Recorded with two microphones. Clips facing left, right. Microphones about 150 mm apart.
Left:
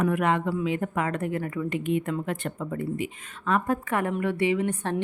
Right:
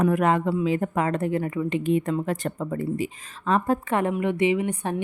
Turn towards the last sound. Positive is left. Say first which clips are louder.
# right 2 dB
turn(degrees=-15)  # may be behind; listen again after turning